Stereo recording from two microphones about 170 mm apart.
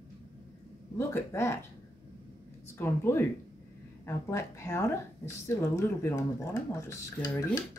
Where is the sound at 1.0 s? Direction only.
15° left (ahead or behind).